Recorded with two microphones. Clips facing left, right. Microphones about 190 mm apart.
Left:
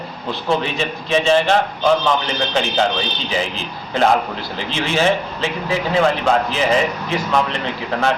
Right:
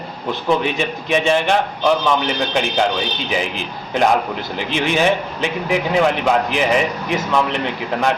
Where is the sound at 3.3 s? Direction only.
15° right (ahead or behind).